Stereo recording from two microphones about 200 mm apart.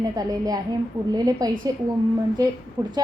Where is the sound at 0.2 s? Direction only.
20° right (ahead or behind).